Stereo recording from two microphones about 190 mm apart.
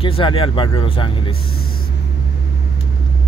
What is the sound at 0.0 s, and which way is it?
Speech, 30° left (ahead or behind).